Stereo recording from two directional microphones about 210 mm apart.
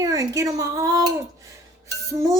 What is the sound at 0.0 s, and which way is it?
Speech, 15° right (ahead or behind).